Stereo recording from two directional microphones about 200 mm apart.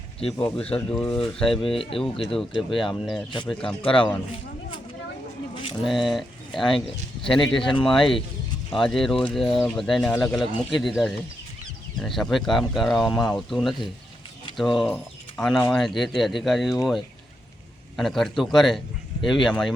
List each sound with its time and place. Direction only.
0.3 s speech: 5° left (ahead or behind)
2.1 s speech: 25° left (ahead or behind)
2.4 s speech: centre (ahead or behind)
3.8 s speech: 25° left (ahead or behind)
5.8 s speech: centre (ahead or behind)
7.5 s speech: 25° left (ahead or behind)
7.9 s speech: centre (ahead or behind)